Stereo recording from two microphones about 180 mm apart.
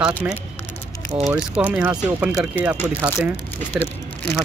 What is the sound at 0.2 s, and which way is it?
Speech, 10° right (ahead or behind).